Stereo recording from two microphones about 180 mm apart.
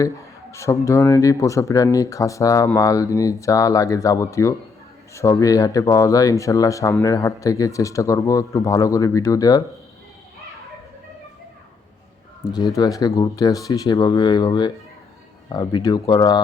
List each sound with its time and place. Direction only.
0.5 s speech: 15° left (ahead or behind)
12.5 s speech: 20° left (ahead or behind)